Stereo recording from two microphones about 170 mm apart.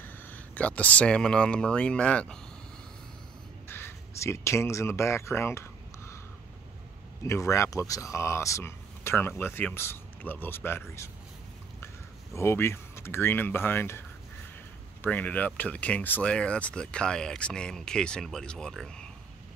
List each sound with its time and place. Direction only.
0.0 s speech: 10° left (ahead or behind)
3.6 s speech: 15° left (ahead or behind)
7.2 s speech: 15° left (ahead or behind)
12.4 s speech: 15° left (ahead or behind)
15.0 s speech: 10° left (ahead or behind)